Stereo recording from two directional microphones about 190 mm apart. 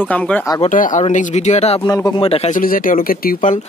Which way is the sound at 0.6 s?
40° left (ahead or behind).